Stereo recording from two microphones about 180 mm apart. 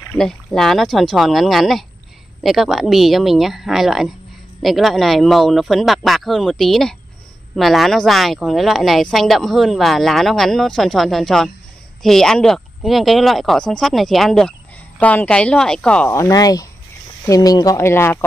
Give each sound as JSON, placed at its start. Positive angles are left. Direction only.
{"t": 0.2, "sound": "speech", "side_deg": 0}